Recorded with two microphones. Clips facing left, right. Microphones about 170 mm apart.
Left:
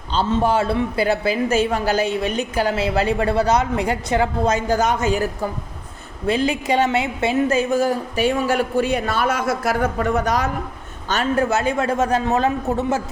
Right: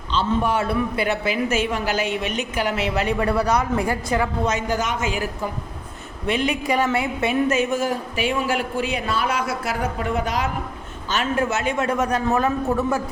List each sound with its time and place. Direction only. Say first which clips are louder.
0.3 s a woman's voice: left 4 dB; 30° left (ahead or behind)